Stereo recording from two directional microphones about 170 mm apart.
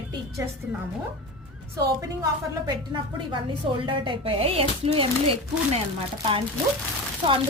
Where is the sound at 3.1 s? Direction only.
30° right (ahead or behind).